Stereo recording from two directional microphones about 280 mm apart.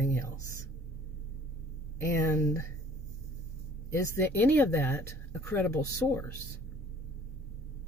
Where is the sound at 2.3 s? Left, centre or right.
Centre.